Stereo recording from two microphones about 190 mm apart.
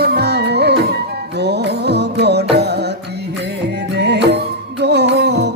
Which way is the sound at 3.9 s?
65° right (ahead or behind).